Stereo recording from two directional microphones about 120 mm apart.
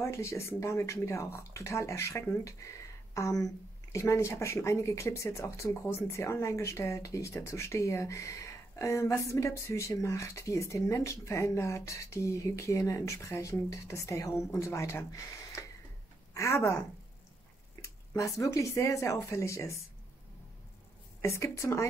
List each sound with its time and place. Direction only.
0.0 s speech: 25° left (ahead or behind)
17.8 s speech: 25° left (ahead or behind)
21.2 s speech: 25° left (ahead or behind)